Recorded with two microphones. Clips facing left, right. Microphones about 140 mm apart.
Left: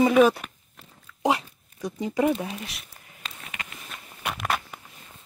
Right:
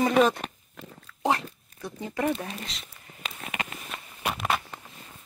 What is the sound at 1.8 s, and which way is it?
Speech, 15° left (ahead or behind).